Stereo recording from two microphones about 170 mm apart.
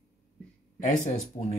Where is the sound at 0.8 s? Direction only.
45° left (ahead or behind).